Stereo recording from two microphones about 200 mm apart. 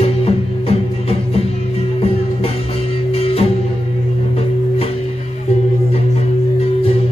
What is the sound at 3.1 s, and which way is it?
Music, 30° left (ahead or behind).